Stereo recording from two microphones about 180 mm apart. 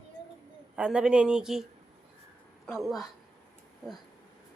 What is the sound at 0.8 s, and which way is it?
Speech, 5° right (ahead or behind).